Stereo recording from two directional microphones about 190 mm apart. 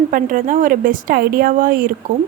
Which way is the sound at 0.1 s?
45° right (ahead or behind).